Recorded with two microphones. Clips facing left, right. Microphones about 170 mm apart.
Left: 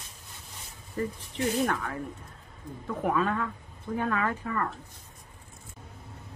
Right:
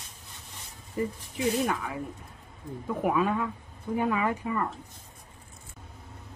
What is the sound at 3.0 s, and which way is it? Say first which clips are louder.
Speech: right 1 dB; 10° right (ahead or behind).